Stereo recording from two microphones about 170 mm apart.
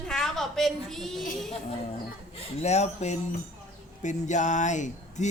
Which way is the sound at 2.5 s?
40° left (ahead or behind).